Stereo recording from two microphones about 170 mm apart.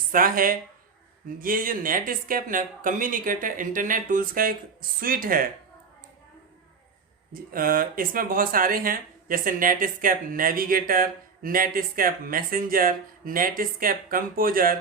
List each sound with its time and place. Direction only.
0.1 s speech: 55° right (ahead or behind)
7.5 s speech: 55° right (ahead or behind)